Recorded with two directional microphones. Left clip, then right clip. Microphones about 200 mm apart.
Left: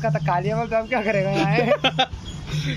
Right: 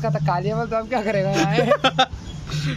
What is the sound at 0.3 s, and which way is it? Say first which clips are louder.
Speech: even; 5° right (ahead or behind).